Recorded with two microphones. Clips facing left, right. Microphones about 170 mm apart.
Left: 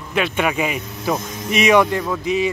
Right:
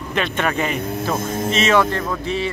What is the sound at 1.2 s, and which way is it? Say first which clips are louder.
Speech: right 8 dB; 50° right (ahead or behind).